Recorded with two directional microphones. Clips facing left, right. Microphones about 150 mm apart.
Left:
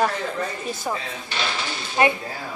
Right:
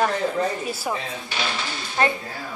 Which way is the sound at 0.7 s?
10° right (ahead or behind).